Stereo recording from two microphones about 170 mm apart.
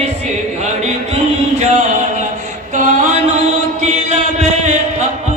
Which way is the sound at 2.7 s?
45° right (ahead or behind).